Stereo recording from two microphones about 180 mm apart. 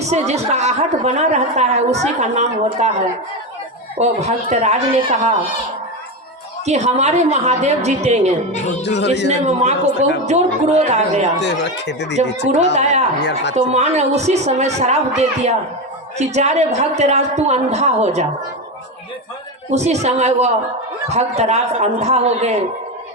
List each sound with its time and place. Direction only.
0.0 s a woman's voice: 40° right (ahead or behind)
3.9 s a woman's voice: 40° right (ahead or behind)
6.7 s a woman's voice: 40° right (ahead or behind)
8.8 s speech: 75° left (ahead or behind)
9.5 s a woman's voice: 40° right (ahead or behind)
11.3 s speech: 75° left (ahead or behind)
12.7 s a woman's voice: 40° right (ahead or behind)
19.7 s a woman's voice: 40° right (ahead or behind)